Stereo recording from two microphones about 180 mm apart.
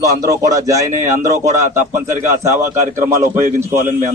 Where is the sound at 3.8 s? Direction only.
45° right (ahead or behind).